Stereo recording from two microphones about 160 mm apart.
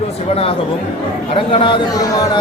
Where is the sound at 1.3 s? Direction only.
35° left (ahead or behind).